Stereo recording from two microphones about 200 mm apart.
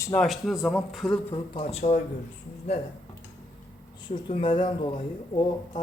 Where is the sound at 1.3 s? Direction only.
30° left (ahead or behind).